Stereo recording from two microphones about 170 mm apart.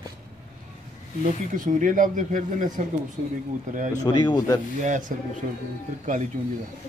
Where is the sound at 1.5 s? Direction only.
50° right (ahead or behind).